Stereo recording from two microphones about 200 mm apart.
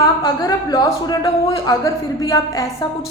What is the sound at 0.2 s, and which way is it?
A woman's voice, 20° left (ahead or behind).